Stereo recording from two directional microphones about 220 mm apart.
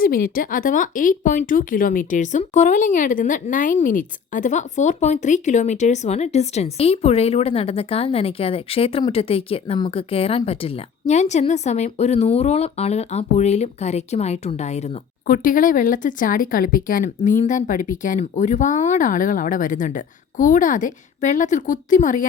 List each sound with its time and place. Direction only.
0.0 s speech: 40° left (ahead or behind)